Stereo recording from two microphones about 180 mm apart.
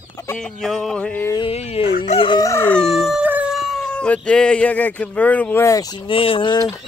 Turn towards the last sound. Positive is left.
turn(degrees=25)  # may be behind; listen again after turning